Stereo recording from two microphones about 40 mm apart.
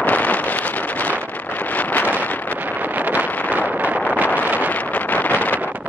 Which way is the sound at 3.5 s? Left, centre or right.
Right.